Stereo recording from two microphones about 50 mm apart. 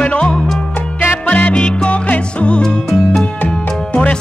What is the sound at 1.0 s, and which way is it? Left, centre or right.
Music, left.